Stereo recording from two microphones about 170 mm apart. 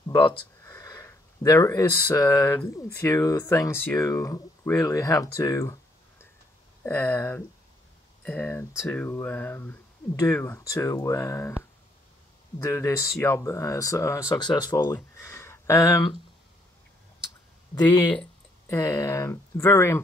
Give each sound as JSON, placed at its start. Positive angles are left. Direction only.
{"t": 0.0, "sound": "a sound", "side_deg": 15}
{"t": 2.0, "sound": "speech", "side_deg": 15}
{"t": 12.5, "sound": "speech", "side_deg": 15}
{"t": 17.7, "sound": "speech", "side_deg": 25}
{"t": 18.1, "sound": "a sound", "side_deg": 5}
{"t": 18.8, "sound": "speech", "side_deg": 20}